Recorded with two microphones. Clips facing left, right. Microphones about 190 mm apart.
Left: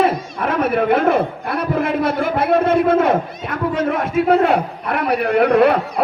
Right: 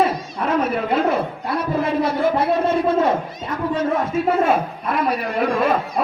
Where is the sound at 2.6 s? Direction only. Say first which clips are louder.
Left 3 dB; 60° left (ahead or behind).